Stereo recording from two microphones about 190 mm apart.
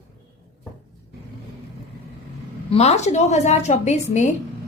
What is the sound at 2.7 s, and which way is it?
A woman's voice, 35° left (ahead or behind).